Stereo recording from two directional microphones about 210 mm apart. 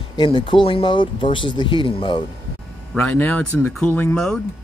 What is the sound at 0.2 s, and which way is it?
Speech, 20° left (ahead or behind).